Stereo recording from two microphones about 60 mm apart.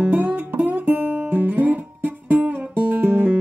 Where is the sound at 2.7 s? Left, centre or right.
Right.